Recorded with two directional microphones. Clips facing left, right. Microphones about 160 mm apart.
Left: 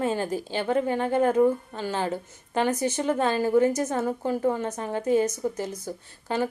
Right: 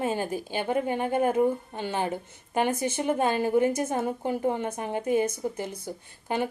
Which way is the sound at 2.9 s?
10° right (ahead or behind).